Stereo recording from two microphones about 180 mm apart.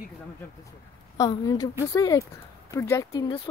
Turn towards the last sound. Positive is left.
turn(degrees=25)  # may be behind; listen again after turning